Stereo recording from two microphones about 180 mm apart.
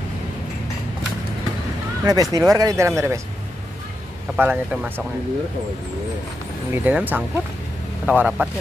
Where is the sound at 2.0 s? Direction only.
20° right (ahead or behind).